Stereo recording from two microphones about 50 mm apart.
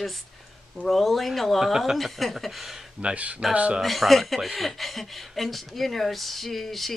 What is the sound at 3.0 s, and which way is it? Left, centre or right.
Speech, right.